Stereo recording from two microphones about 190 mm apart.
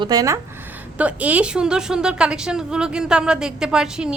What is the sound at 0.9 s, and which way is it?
A woman's voice, 5° right (ahead or behind).